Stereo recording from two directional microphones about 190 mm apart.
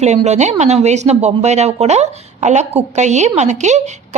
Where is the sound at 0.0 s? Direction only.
35° right (ahead or behind).